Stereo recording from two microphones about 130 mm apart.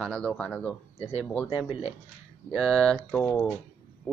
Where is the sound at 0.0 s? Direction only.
5° left (ahead or behind).